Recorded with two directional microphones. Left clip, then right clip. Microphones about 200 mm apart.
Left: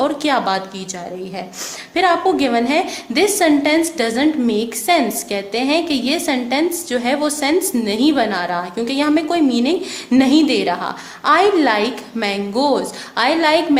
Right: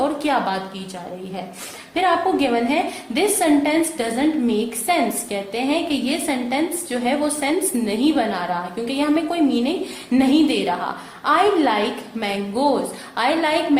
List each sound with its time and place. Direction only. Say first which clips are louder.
0.2 s a woman's voice: left 3 dB; 40° left (ahead or behind)
2.0 s a woman's voice: left 3 dB; 40° left (ahead or behind)